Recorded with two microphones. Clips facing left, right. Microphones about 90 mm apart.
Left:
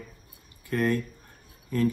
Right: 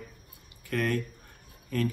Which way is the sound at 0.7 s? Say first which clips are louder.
Left 4 dB; 30° left (ahead or behind).